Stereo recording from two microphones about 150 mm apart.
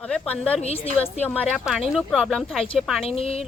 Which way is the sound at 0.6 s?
45° left (ahead or behind).